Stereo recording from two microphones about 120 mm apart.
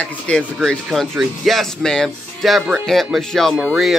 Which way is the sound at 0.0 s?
10° left (ahead or behind).